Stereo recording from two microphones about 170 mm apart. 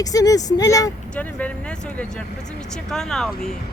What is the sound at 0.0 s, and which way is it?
Speech, 20° left (ahead or behind).